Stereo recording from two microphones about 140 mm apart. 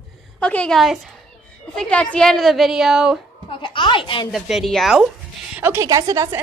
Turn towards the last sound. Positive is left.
turn(degrees=-25)  # may be behind; listen again after turning